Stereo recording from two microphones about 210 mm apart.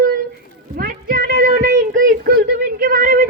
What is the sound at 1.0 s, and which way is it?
Music, 45° right (ahead or behind).